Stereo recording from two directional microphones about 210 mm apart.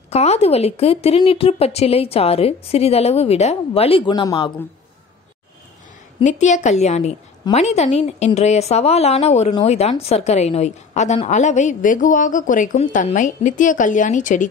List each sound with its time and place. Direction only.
0.1 s speech: 30° left (ahead or behind)
6.1 s a woman's voice: 35° left (ahead or behind)